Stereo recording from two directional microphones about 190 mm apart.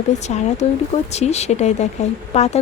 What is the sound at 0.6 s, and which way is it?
A woman's voice, 35° left (ahead or behind).